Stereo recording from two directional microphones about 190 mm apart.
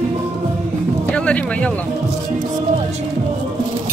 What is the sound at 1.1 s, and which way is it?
Speech, 5° left (ahead or behind).